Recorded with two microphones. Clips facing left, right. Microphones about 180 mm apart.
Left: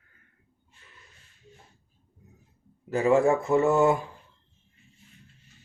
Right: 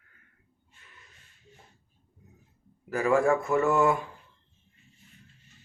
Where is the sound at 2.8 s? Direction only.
25° left (ahead or behind).